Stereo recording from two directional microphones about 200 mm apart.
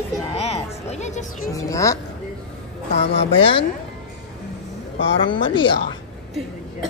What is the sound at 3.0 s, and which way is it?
Speech, 30° left (ahead or behind).